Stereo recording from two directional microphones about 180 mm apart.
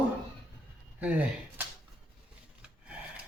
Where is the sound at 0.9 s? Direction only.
10° right (ahead or behind).